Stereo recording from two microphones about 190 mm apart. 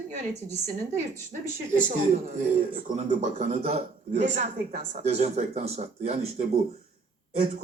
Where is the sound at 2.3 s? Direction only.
40° right (ahead or behind).